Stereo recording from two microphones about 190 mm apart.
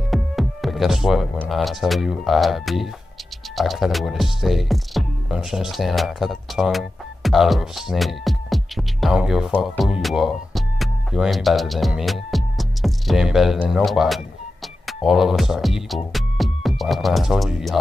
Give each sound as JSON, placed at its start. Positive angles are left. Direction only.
{"t": 0.1, "sound": "speech", "side_deg": 0}